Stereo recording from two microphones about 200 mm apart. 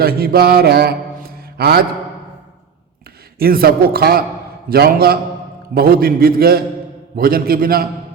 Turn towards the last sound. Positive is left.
turn(degrees=-50)  # may be behind; listen again after turning